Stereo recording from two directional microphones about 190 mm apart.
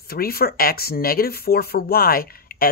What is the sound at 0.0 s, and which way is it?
Speech, 55° left (ahead or behind).